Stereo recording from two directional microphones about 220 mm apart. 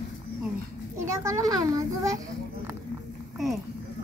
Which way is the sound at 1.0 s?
15° right (ahead or behind).